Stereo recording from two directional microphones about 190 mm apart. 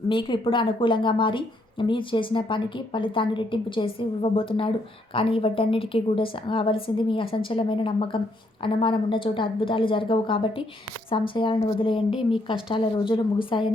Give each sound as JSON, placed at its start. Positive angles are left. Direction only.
{"t": 0.1, "sound": "a woman's voice", "side_deg": 25}